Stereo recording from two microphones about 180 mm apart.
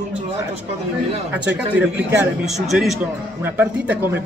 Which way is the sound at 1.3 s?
10° right (ahead or behind).